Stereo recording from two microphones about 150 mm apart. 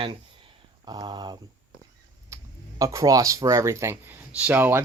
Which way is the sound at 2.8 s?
20° right (ahead or behind).